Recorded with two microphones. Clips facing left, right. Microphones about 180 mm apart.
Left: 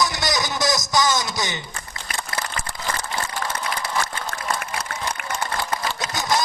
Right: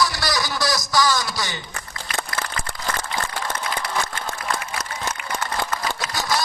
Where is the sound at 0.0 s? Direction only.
20° left (ahead or behind).